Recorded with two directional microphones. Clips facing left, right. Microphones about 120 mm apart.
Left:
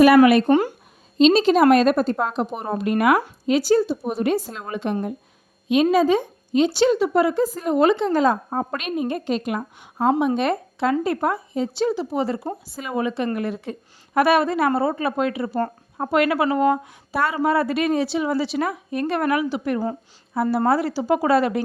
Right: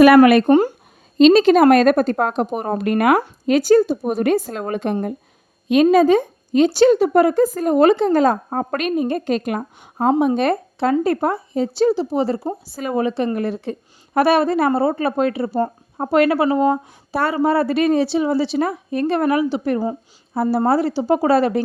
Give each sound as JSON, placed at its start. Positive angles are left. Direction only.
{"t": 0.4, "sound": "speech", "side_deg": -35}
{"t": 1.2, "sound": "a woman's voice", "side_deg": -55}